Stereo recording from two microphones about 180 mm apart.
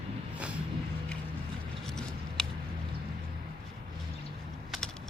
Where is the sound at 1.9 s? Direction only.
5° left (ahead or behind).